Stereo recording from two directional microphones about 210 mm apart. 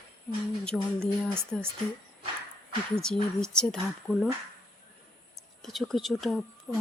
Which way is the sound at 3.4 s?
5° left (ahead or behind).